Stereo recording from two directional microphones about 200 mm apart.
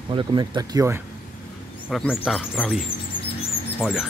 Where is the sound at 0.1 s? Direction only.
25° right (ahead or behind).